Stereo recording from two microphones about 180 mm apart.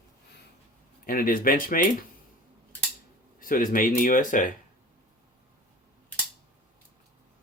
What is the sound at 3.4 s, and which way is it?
Speech, 50° left (ahead or behind).